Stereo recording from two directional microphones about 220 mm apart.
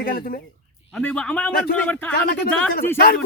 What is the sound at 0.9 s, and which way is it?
Speech, 5° left (ahead or behind).